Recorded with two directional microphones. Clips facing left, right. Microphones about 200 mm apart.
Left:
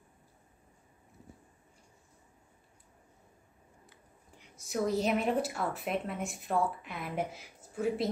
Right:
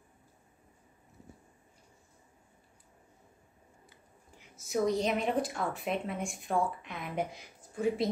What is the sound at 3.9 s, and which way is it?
Speech, centre (ahead or behind).